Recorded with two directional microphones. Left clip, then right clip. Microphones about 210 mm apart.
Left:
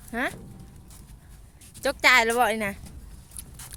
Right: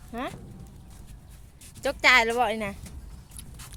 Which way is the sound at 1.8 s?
15° left (ahead or behind).